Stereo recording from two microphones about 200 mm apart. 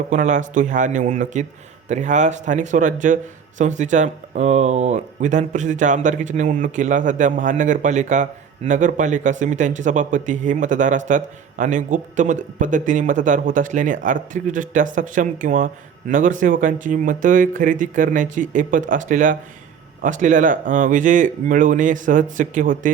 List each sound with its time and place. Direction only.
0.1 s speech: 40° right (ahead or behind)